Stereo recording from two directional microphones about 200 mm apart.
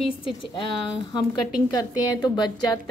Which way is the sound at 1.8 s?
20° left (ahead or behind).